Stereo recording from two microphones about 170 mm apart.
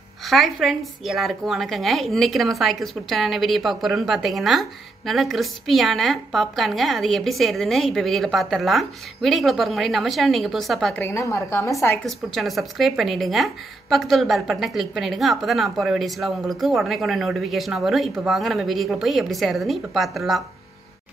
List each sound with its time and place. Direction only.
0.2 s a woman's voice: centre (ahead or behind)
11.1 s a woman's voice: 20° left (ahead or behind)
12.1 s a woman's voice: centre (ahead or behind)